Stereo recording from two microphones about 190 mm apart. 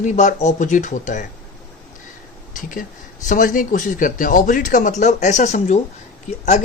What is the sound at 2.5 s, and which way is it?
Speech, 45° left (ahead or behind).